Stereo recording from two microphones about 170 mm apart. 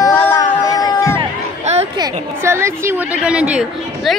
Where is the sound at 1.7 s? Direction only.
40° right (ahead or behind).